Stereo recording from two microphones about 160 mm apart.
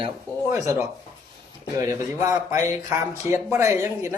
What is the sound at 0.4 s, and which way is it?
Speech, 20° right (ahead or behind).